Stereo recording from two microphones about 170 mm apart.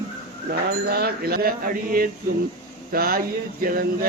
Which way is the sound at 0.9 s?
65° right (ahead or behind).